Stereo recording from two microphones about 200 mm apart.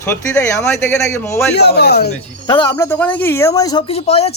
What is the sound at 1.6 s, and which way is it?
Speech, 55° left (ahead or behind).